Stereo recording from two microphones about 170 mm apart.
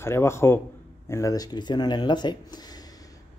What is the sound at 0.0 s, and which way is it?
Speech, 15° left (ahead or behind).